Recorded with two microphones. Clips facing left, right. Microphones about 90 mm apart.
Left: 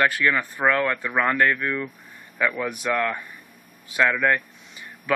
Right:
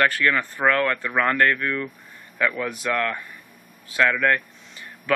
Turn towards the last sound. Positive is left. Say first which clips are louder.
# even
turn(degrees=10)  # may be behind; listen again after turning